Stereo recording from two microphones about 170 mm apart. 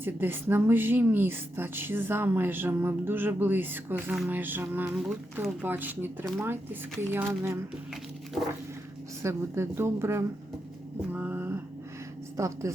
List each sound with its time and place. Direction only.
0.0 s a woman's voice: 15° right (ahead or behind)
7.1 s a woman's voice: 15° right (ahead or behind)
9.2 s a woman's voice: 15° right (ahead or behind)
11.1 s a sound: 10° right (ahead or behind)
12.4 s a woman's voice: 20° right (ahead or behind)